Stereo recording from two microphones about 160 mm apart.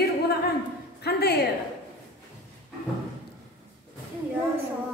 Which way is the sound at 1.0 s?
90° left.